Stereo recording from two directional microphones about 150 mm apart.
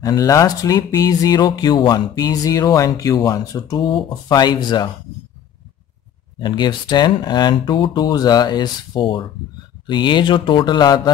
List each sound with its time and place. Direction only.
0.0 s speech: 25° left (ahead or behind)
6.4 s speech: 30° left (ahead or behind)